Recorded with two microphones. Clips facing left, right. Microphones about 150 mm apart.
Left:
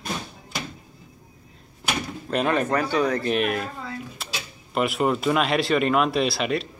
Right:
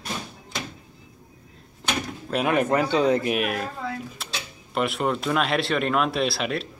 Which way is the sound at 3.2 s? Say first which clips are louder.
Left 1 dB; 5° right (ahead or behind).